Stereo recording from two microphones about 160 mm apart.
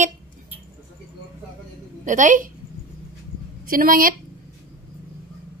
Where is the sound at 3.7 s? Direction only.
60° right (ahead or behind).